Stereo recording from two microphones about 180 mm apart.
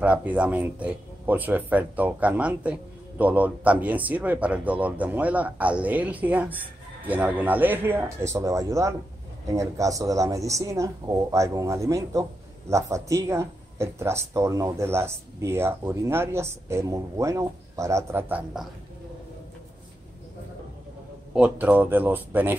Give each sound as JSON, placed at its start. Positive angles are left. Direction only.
{"t": 0.0, "sound": "speech", "side_deg": -10}
{"t": 21.4, "sound": "speech", "side_deg": -10}